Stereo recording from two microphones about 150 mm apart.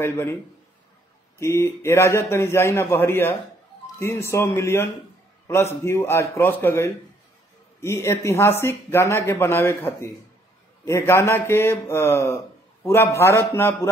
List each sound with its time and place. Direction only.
0.0 s speech: 20° left (ahead or behind)
1.4 s speech: 20° left (ahead or behind)